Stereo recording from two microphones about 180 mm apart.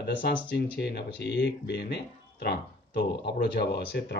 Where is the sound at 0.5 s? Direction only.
70° left (ahead or behind).